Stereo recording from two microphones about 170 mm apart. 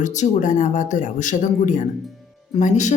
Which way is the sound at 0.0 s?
45° left (ahead or behind).